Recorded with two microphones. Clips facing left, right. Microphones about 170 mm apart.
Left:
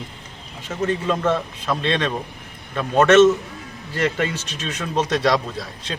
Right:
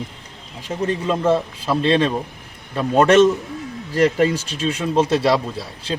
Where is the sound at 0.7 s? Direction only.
30° right (ahead or behind).